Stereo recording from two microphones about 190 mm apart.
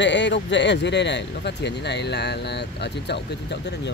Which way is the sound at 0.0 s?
70° left (ahead or behind).